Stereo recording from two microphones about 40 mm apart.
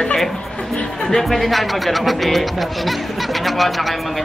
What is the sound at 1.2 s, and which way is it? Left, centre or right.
Speech, centre.